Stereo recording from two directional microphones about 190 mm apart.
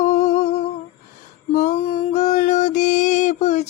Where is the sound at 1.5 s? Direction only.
35° left (ahead or behind).